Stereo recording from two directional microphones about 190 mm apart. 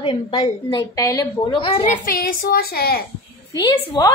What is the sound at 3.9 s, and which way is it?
Speech, 20° left (ahead or behind).